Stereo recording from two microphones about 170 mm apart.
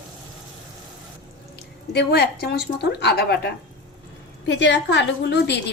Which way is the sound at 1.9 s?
75° left (ahead or behind).